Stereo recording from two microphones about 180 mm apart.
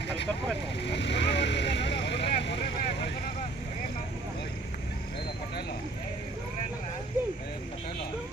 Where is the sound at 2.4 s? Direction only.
75° left (ahead or behind).